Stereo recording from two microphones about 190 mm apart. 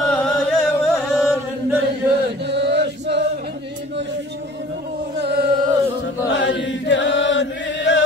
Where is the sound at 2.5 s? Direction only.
60° right (ahead or behind).